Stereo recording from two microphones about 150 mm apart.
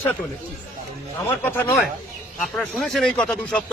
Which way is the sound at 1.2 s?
15° left (ahead or behind).